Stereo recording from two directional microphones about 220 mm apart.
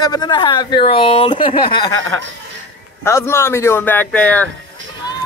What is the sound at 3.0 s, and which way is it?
Speech, 10° left (ahead or behind).